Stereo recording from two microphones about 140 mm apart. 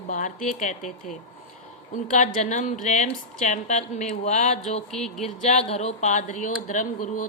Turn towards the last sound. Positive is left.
turn(degrees=65)  # may be behind; listen again after turning